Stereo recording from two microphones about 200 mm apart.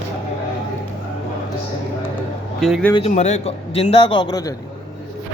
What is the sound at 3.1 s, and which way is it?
A man's voice, 35° left (ahead or behind).